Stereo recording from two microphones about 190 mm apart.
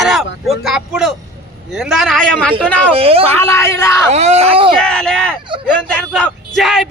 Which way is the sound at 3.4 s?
15° left (ahead or behind).